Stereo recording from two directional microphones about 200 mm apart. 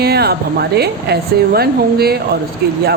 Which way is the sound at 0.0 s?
50° right (ahead or behind).